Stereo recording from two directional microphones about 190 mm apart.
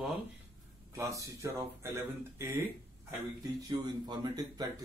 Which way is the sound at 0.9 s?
15° right (ahead or behind).